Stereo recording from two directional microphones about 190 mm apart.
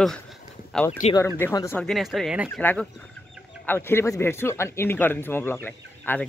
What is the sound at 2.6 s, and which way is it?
Speech, 10° left (ahead or behind).